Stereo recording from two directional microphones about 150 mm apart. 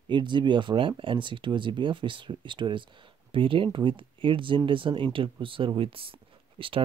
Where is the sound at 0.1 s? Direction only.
30° right (ahead or behind).